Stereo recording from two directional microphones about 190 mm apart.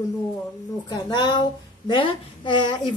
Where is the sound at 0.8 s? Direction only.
20° left (ahead or behind).